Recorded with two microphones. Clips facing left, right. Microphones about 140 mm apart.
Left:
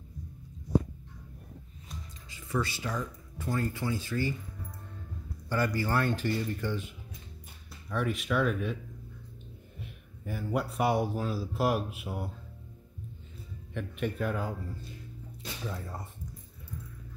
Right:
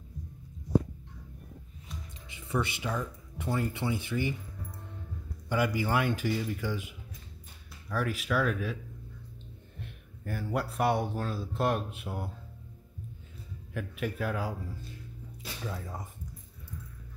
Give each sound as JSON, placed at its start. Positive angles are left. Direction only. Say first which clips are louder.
{"t": 2.2, "sound": "music", "louder": "even", "side_deg": -20}
{"t": 3.3, "sound": "speech", "louder": "even", "side_deg": -20}
{"t": 5.5, "sound": "speech", "louder": "right 1 dB", "side_deg": -15}
{"t": 9.8, "sound": "speech", "louder": "right 1 dB", "side_deg": 0}
{"t": 13.7, "sound": "speech", "louder": "left 1 dB", "side_deg": -5}
{"t": 15.6, "sound": "speech", "louder": "even", "side_deg": 5}